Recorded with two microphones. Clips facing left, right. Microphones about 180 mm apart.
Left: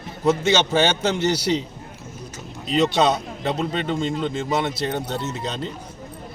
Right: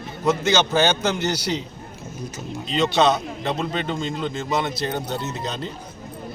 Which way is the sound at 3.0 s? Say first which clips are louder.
Right 4 dB; 30° left (ahead or behind).